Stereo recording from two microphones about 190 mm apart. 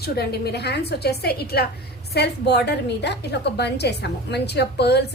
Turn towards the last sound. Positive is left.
turn(degrees=60)  # may be behind; listen again after turning